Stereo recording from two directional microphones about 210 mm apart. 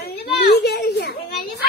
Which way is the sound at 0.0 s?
50° left (ahead or behind).